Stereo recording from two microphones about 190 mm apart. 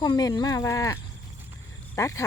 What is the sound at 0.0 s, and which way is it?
Speech, 20° left (ahead or behind).